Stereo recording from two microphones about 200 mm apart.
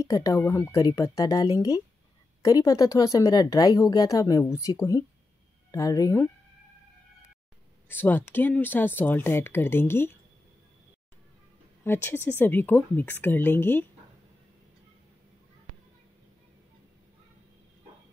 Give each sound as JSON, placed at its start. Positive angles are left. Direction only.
{"t": 0.0, "sound": "speech", "side_deg": 15}
{"t": 7.9, "sound": "speech", "side_deg": 10}
{"t": 11.8, "sound": "speech", "side_deg": 10}